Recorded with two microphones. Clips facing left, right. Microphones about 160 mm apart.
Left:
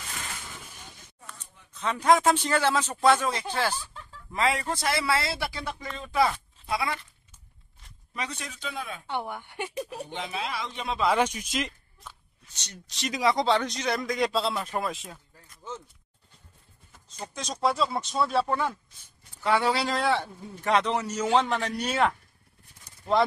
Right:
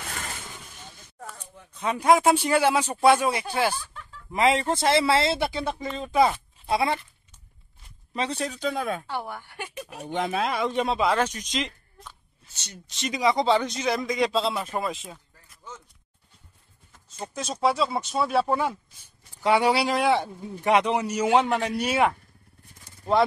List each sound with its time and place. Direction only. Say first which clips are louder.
1.3 s a sound: right 7 dB; 65° right (ahead or behind)
1.7 s a man's voice: right 2 dB; 10° right (ahead or behind); by 7.0 s 30° right (ahead or behind)
8.1 s speech: right 8 dB; 30° right (ahead or behind)
9.0 s a woman's voice: even; 20° left (ahead or behind)
10.1 s speech: right 8 dB; 50° right (ahead or behind)
11.1 s speech: even; 10° left (ahead or behind)
17.3 s speech: right 3 dB; 5° right (ahead or behind)